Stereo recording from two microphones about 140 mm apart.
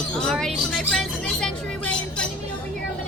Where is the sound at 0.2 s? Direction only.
5° left (ahead or behind).